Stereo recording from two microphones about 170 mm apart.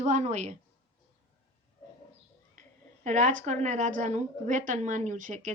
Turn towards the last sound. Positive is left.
turn(degrees=-45)  # may be behind; listen again after turning